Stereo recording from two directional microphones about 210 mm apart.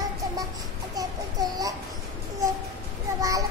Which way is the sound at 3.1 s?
15° right (ahead or behind).